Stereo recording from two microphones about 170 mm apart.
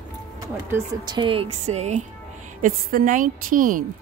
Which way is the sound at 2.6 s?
50° right (ahead or behind).